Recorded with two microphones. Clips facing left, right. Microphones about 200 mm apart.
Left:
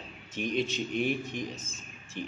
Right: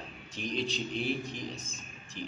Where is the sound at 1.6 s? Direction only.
35° right (ahead or behind).